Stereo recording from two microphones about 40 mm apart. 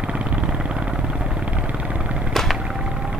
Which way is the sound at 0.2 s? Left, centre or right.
Right.